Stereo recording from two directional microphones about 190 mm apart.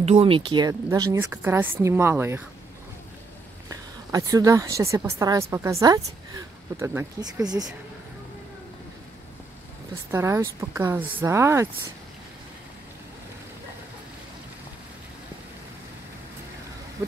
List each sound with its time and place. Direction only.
0.0 s speech: 30° right (ahead or behind); by 2.4 s 10° right (ahead or behind)
3.7 s a woman's voice: 20° right (ahead or behind)
10.1 s speech: 15° right (ahead or behind)